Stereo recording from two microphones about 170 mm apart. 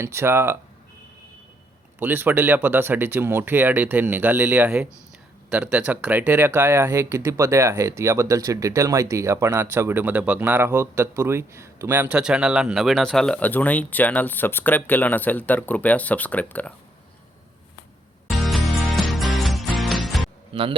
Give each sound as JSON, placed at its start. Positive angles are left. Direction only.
{"t": 0.0, "sound": "speech", "side_deg": -15}
{"t": 2.0, "sound": "speech", "side_deg": -10}
{"t": 18.3, "sound": "music", "side_deg": 0}
{"t": 20.5, "sound": "a man's voice", "side_deg": -30}